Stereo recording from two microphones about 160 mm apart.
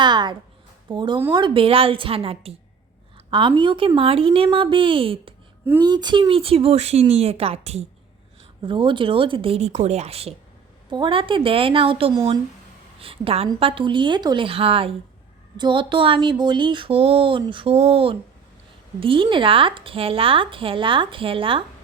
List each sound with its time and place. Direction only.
0.0 s a sound: 30° right (ahead or behind)
0.9 s speech: 30° right (ahead or behind)
8.6 s speech: 30° right (ahead or behind)
10.8 s speech: 30° right (ahead or behind)